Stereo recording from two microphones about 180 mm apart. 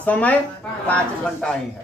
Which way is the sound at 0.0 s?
10° left (ahead or behind).